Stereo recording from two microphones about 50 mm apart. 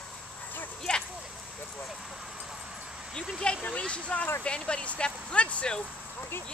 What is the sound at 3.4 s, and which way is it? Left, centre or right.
Speech, left.